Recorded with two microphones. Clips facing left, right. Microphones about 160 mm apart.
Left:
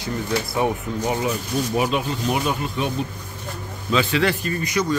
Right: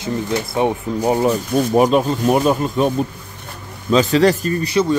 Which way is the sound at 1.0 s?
35° right (ahead or behind).